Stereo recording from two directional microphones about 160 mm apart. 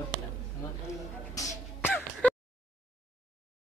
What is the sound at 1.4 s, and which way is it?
Throat clearing, 15° left (ahead or behind).